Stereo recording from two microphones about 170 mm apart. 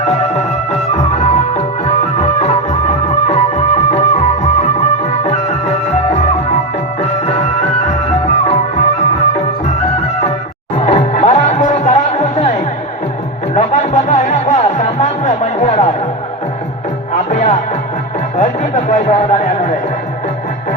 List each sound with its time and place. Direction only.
0.0 s music: 40° left (ahead or behind)
10.8 s music: 40° left (ahead or behind)
17.1 s music: 45° left (ahead or behind)